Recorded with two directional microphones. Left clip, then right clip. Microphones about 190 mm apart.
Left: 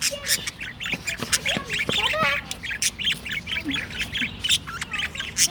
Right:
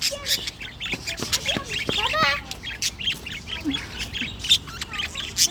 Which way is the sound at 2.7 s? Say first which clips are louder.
Left 2 dB; 5° left (ahead or behind).